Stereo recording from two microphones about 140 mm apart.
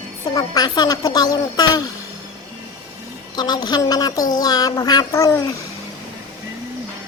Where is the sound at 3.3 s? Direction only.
30° left (ahead or behind).